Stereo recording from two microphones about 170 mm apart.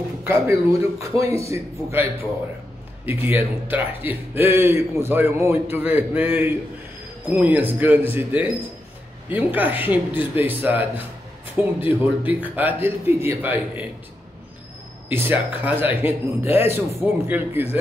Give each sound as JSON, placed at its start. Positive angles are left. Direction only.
{"t": 0.2, "sound": "speech", "side_deg": -15}
{"t": 3.1, "sound": "speech", "side_deg": -10}
{"t": 15.0, "sound": "speech", "side_deg": -10}